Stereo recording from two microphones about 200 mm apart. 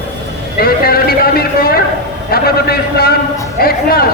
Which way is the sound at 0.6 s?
50° left (ahead or behind).